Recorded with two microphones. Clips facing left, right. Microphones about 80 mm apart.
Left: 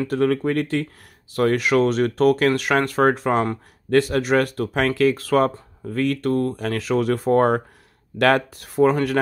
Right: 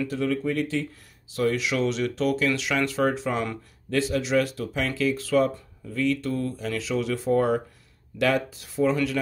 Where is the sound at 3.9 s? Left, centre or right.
Left.